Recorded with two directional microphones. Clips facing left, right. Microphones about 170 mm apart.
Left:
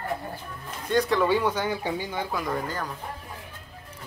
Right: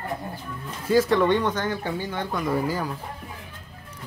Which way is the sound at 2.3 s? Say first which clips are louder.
Right 7 dB; 5° right (ahead or behind).